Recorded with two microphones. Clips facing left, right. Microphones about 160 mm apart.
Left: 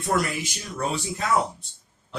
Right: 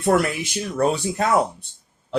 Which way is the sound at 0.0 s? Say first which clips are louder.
Right 6 dB; 60° right (ahead or behind).